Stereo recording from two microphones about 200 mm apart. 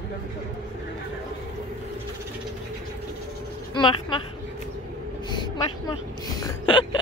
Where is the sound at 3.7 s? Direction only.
25° left (ahead or behind).